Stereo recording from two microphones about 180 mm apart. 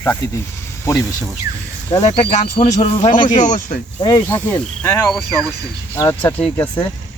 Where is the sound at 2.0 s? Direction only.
35° left (ahead or behind).